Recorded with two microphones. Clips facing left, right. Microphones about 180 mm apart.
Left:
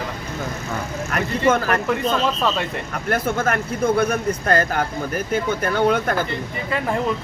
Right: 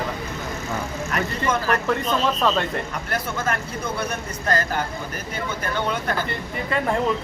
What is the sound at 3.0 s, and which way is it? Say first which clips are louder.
Speech: left 8 dB; 55° left (ahead or behind).